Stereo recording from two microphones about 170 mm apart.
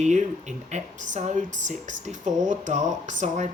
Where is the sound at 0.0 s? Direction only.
45° right (ahead or behind).